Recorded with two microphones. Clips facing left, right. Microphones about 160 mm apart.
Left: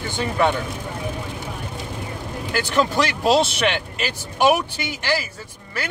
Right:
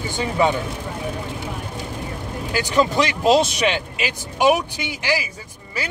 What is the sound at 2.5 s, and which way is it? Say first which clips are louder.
Speech: right 1 dB; 15° right (ahead or behind).